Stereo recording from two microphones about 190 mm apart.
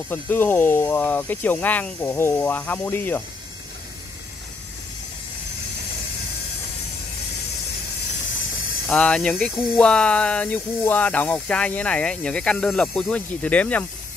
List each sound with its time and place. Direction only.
0.1 s speech: 10° left (ahead or behind)
8.8 s speech: 5° left (ahead or behind)